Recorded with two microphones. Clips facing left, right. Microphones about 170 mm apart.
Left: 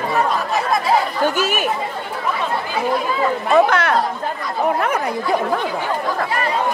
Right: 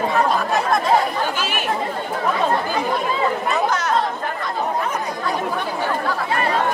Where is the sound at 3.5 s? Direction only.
60° left (ahead or behind).